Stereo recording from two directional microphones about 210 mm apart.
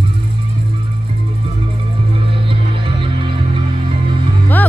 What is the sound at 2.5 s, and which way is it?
Music, 25° right (ahead or behind).